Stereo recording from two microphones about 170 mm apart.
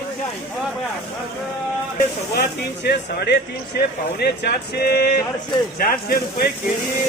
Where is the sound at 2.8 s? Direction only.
70° left (ahead or behind).